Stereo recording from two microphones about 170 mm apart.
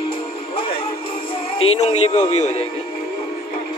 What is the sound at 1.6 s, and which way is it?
Speech, 35° left (ahead or behind).